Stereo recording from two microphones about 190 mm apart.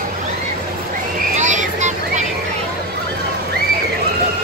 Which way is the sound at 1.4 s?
40° right (ahead or behind).